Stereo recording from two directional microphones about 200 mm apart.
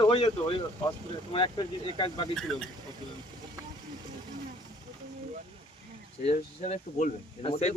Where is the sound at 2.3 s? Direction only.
Centre (ahead or behind).